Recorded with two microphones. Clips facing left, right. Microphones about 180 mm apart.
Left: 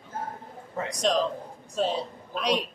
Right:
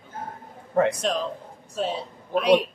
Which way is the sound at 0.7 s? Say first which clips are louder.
Right 12 dB; 55° right (ahead or behind).